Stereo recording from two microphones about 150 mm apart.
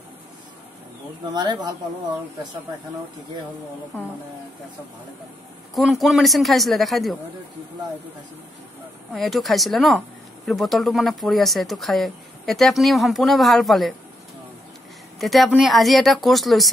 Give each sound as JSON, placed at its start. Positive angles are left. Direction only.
{"t": 1.3, "sound": "speech", "side_deg": -30}
{"t": 5.8, "sound": "speech", "side_deg": 0}
{"t": 9.1, "sound": "speech", "side_deg": 0}
{"t": 15.1, "sound": "speech", "side_deg": 0}